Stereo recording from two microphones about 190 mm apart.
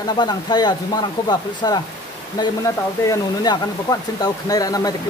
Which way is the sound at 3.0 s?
20° left (ahead or behind).